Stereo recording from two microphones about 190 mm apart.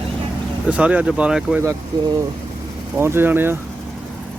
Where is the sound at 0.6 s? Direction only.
5° right (ahead or behind).